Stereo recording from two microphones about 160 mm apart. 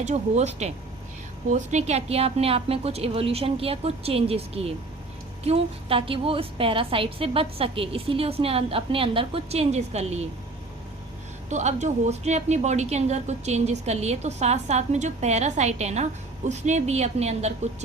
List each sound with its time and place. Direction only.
0.0 s a woman's voice: 45° right (ahead or behind)
11.4 s a woman's voice: 45° right (ahead or behind)